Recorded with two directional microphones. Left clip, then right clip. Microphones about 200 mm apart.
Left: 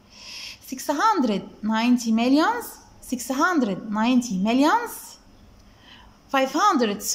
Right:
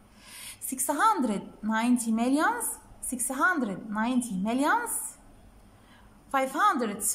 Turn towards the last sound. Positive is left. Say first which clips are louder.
# left 5 dB
turn(degrees=5)  # may be behind; listen again after turning